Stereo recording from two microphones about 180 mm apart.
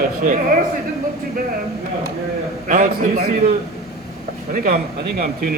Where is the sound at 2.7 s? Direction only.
45° right (ahead or behind).